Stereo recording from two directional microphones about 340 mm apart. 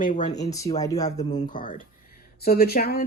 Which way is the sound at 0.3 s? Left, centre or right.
Centre.